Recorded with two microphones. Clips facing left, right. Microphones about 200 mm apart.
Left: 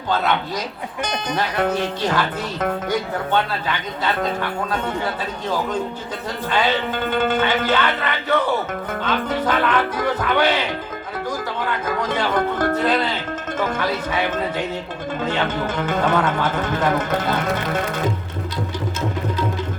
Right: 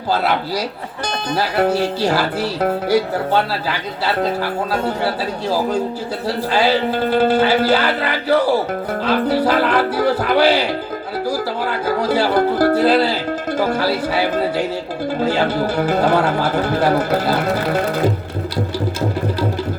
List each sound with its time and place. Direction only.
0.1 s speech: 35° right (ahead or behind)